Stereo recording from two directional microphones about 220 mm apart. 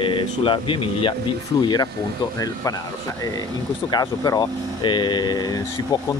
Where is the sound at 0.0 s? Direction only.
25° left (ahead or behind).